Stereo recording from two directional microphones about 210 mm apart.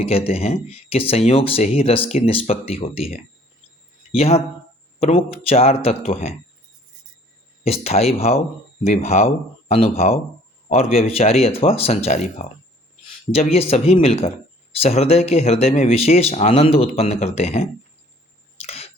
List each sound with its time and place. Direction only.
0.0 s speech: 30° left (ahead or behind)
7.6 s speech: 30° left (ahead or behind)
18.6 s a sound: 30° left (ahead or behind)